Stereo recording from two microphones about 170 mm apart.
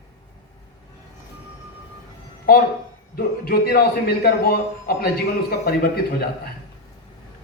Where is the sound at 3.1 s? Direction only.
60° left (ahead or behind).